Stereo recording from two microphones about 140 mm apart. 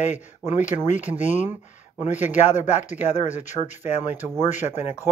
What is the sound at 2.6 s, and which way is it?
Speech, 60° left (ahead or behind).